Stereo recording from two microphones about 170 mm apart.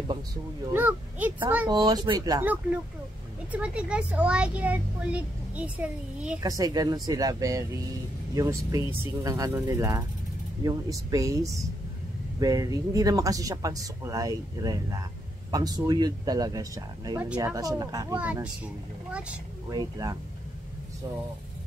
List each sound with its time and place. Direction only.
0.7 s speech: 10° right (ahead or behind)
1.7 s speech: 25° right (ahead or behind)
2.4 s speech: 10° right (ahead or behind)
6.4 s speech: 20° right (ahead or behind)
18.1 s speech: 10° right (ahead or behind)
19.7 s speech: 20° right (ahead or behind)